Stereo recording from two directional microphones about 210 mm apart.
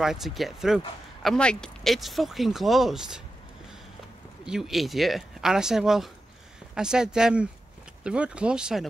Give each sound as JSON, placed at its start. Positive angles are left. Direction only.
{"t": 0.0, "sound": "speech", "side_deg": 0}
{"t": 4.5, "sound": "speech", "side_deg": 0}